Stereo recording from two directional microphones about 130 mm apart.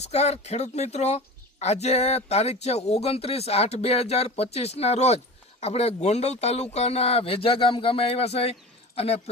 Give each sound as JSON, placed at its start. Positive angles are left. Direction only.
{"t": 0.0, "sound": "speech", "side_deg": 55}